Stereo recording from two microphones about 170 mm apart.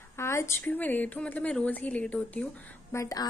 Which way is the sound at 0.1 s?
15° left (ahead or behind).